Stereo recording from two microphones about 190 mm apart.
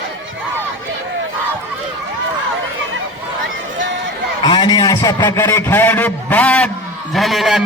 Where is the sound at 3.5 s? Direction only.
75° right (ahead or behind).